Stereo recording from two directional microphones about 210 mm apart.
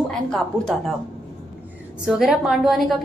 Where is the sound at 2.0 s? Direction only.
5° right (ahead or behind).